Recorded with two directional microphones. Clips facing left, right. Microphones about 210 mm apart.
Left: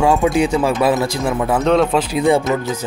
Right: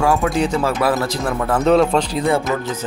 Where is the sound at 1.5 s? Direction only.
Centre (ahead or behind).